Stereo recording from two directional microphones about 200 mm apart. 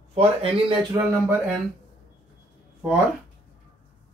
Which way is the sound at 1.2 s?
10° right (ahead or behind).